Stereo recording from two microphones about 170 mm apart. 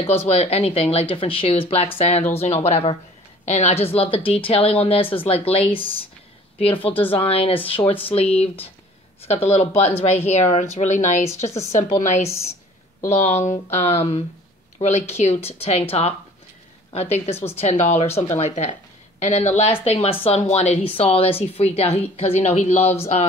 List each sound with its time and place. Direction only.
0.0 s speech: 35° left (ahead or behind)